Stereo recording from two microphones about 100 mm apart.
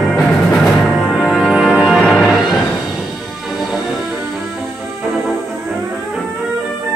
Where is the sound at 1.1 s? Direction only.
Centre (ahead or behind).